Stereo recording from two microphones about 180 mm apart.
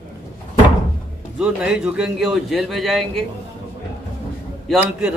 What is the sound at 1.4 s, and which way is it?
A man's voice, 5° right (ahead or behind).